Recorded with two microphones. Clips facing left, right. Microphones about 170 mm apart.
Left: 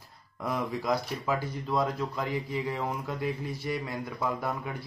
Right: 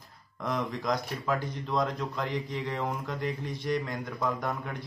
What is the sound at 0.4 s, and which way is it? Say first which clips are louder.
Speech: even; 5° left (ahead or behind).